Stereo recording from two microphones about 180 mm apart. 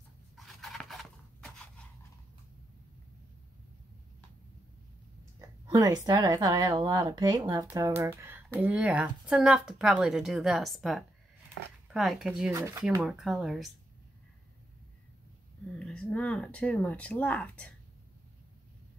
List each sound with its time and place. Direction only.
0.4 s scissors: centre (ahead or behind)
5.7 s speech: 20° right (ahead or behind); by 13.7 s centre (ahead or behind)
15.8 s speech: 5° left (ahead or behind)